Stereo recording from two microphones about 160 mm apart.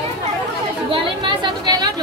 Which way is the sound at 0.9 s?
30° right (ahead or behind).